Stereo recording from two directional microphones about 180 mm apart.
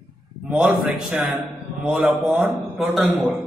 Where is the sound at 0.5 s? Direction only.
5° right (ahead or behind).